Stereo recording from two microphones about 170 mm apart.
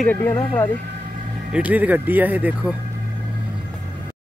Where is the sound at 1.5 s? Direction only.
10° right (ahead or behind).